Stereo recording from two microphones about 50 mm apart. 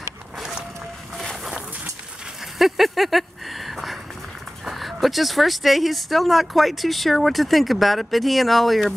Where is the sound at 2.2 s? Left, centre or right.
Centre.